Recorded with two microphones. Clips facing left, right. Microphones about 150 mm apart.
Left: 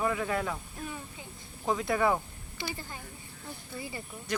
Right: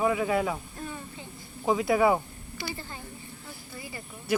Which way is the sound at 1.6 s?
5° right (ahead or behind).